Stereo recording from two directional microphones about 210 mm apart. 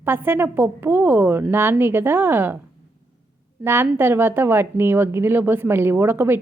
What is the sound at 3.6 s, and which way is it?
A woman's voice, 10° right (ahead or behind).